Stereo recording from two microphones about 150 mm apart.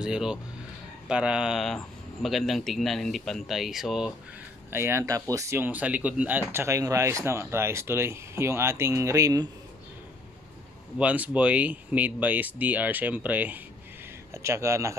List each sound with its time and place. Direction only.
0.0 s speech: 5° right (ahead or behind)
4.7 s speech: 15° right (ahead or behind)
11.0 s speech: 10° right (ahead or behind)